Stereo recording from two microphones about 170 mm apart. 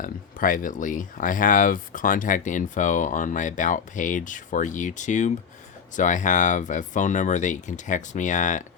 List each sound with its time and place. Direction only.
0.0 s speech: 55° left (ahead or behind)